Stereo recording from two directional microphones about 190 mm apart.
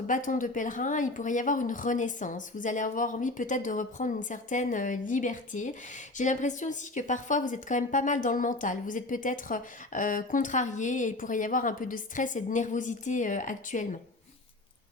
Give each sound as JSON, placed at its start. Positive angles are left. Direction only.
{"t": 0.1, "sound": "a woman's voice", "side_deg": 45}